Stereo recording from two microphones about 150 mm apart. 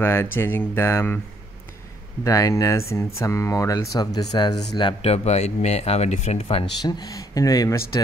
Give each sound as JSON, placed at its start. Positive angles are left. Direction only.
{"t": 0.0, "sound": "speech", "side_deg": 15}
{"t": 2.2, "sound": "speech", "side_deg": 20}
{"t": 6.8, "sound": "speech", "side_deg": 25}